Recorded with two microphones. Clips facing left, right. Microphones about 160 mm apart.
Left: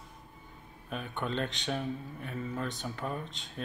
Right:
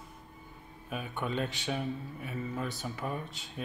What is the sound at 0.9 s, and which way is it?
Speech, 5° right (ahead or behind).